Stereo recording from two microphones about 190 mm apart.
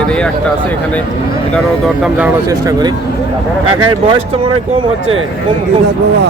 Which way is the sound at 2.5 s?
20° right (ahead or behind).